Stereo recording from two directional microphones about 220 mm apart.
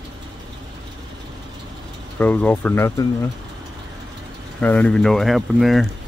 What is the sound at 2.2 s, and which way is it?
Speech, 5° left (ahead or behind).